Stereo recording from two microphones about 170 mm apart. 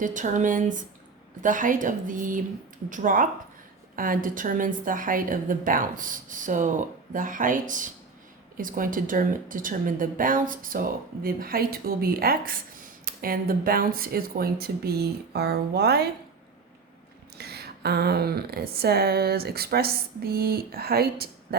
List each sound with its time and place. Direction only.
0.0 s a woman's voice: 50° right (ahead or behind); by 16.0 s 70° right (ahead or behind)
17.3 s speech: 70° right (ahead or behind)